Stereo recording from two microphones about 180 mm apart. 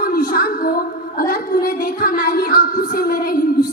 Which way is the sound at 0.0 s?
55° left (ahead or behind).